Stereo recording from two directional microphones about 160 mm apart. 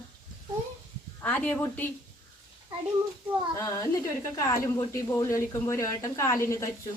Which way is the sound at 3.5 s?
20° left (ahead or behind).